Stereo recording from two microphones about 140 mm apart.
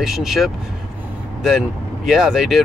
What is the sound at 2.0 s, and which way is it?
Speech, 5° right (ahead or behind).